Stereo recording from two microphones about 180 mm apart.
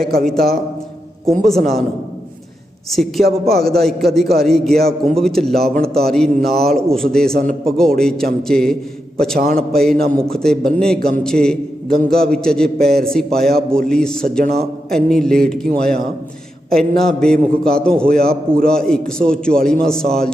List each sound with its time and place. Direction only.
0.2 s a man's voice: centre (ahead or behind)
2.9 s a man's voice: centre (ahead or behind)
3.2 s a man's voice: 60° right (ahead or behind)
3.6 s a man's voice: centre (ahead or behind)
17.0 s a man's voice: 5° left (ahead or behind)